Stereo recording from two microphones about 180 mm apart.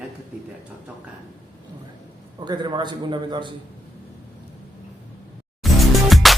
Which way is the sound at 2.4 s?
25° right (ahead or behind).